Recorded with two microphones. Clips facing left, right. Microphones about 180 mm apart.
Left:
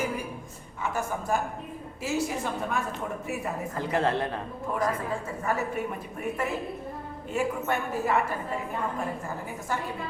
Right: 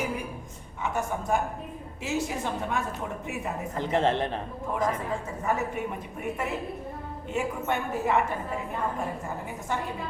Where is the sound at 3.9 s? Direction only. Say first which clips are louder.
Right 2 dB; 25° right (ahead or behind).